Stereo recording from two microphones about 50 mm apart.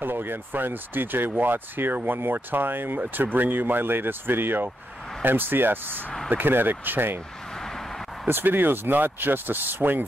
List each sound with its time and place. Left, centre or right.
0.0 s speech: right
7.5 s vehicle: centre
8.3 s speech: right